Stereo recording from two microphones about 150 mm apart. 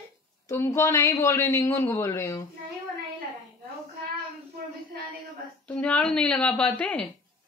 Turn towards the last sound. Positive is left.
turn(degrees=10)  # may be behind; listen again after turning